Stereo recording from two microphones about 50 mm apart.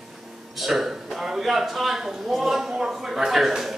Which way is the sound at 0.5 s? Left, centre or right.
Centre.